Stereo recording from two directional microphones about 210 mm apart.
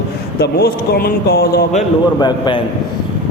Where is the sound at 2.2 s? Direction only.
20° left (ahead or behind).